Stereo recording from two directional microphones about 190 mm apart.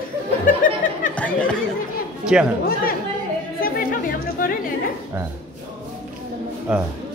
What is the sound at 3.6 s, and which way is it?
Chatter, 50° left (ahead or behind).